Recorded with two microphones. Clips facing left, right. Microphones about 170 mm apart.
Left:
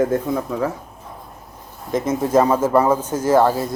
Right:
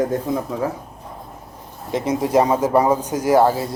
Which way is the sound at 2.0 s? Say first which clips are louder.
Even; 15° right (ahead or behind).